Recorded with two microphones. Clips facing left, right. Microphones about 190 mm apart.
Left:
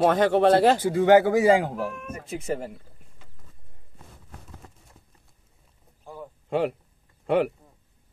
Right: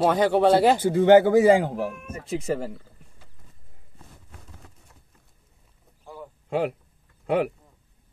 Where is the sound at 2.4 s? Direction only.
30° right (ahead or behind).